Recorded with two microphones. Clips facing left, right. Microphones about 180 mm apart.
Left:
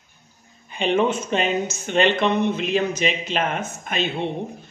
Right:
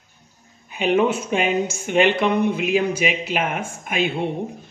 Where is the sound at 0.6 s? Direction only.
5° right (ahead or behind).